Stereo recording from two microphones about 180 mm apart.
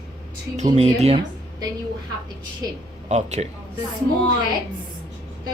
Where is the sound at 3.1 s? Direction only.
40° right (ahead or behind).